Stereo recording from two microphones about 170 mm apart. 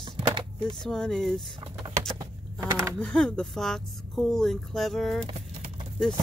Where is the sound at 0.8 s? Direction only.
5° left (ahead or behind).